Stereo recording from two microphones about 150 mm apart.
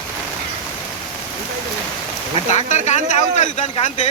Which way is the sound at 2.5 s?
50° left (ahead or behind).